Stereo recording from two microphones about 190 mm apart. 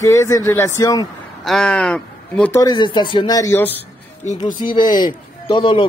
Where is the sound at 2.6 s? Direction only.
25° left (ahead or behind).